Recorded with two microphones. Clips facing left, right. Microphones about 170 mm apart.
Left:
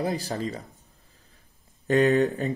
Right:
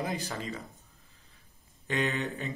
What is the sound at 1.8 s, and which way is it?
Speech, 45° left (ahead or behind).